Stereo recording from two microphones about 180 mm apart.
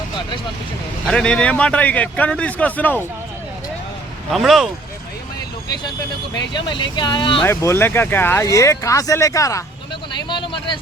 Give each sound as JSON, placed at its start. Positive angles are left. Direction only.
{"t": 1.0, "sound": "speech", "side_deg": 5}
{"t": 4.3, "sound": "speech", "side_deg": 0}
{"t": 6.3, "sound": "speech", "side_deg": 25}
{"t": 7.4, "sound": "speech", "side_deg": 15}